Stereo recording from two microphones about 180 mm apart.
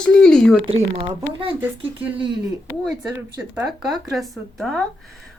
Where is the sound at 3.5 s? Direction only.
Centre (ahead or behind).